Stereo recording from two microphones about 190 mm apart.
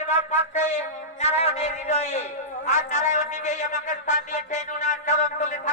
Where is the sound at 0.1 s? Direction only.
40° left (ahead or behind).